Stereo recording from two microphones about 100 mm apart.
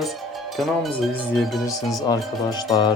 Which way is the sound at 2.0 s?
40° left (ahead or behind).